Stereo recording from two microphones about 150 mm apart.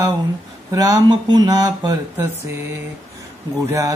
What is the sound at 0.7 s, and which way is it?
Mantra, 25° right (ahead or behind).